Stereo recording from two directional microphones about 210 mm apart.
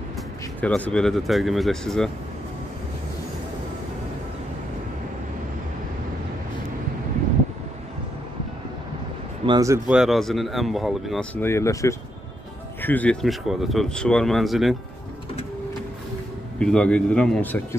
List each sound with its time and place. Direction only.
0.6 s speech: 5° left (ahead or behind)
9.5 s a man's voice: 15° right (ahead or behind)
9.8 s speech: centre (ahead or behind)
16.5 s speech: 5° left (ahead or behind)